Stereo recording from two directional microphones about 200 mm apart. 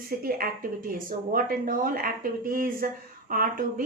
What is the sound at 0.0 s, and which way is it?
A woman's voice, 45° right (ahead or behind).